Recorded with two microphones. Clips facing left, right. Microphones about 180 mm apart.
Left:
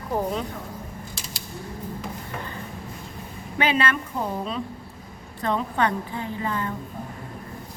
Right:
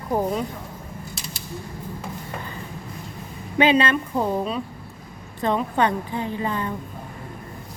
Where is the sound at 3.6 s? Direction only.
20° right (ahead or behind).